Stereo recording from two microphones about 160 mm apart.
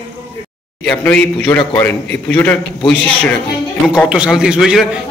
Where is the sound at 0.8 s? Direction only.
5° left (ahead or behind).